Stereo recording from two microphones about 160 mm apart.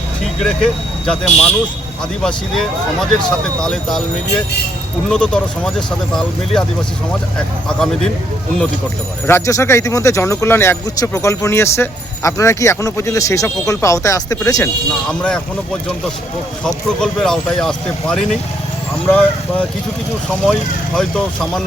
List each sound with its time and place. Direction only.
0.3 s speech: 5° left (ahead or behind)
5.0 s speech: 5° left (ahead or behind)
9.2 s speech: 15° left (ahead or behind)
16.6 s speech: 5° left (ahead or behind)